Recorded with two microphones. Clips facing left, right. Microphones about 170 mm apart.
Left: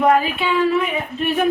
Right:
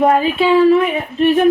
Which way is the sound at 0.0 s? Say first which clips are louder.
Right 4 dB; 30° right (ahead or behind).